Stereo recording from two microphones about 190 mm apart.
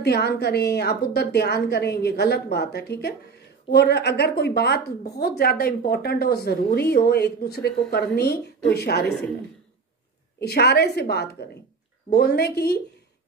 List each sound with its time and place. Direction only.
0.0 s a woman's voice: 60° left (ahead or behind)
10.4 s a woman's voice: 60° left (ahead or behind)